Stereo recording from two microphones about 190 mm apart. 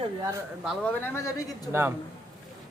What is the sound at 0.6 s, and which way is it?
Speech, centre (ahead or behind).